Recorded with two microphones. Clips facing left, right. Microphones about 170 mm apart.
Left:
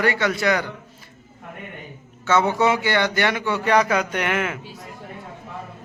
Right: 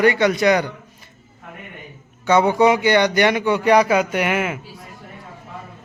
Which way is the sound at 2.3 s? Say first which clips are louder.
Right 4 dB; 15° right (ahead or behind).